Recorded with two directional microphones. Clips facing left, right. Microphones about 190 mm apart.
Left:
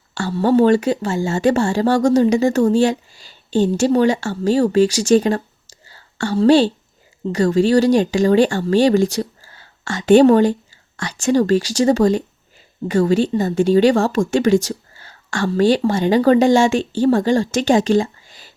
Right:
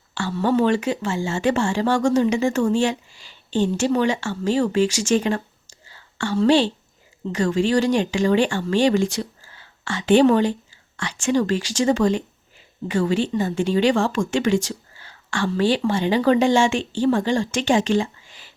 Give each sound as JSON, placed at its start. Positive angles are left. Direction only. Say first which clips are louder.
{"t": 0.1, "sound": "speech", "louder": "left 5 dB", "side_deg": 40}